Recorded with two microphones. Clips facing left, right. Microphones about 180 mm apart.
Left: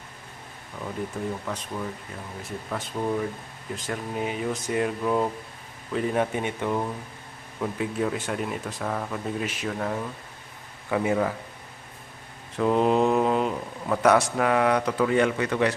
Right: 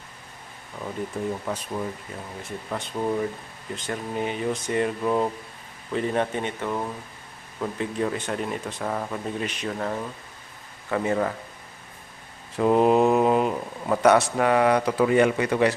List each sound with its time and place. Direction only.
1.2 s speech: 10° right (ahead or behind)
2.4 s speech: centre (ahead or behind)
12.5 s speech: 10° right (ahead or behind)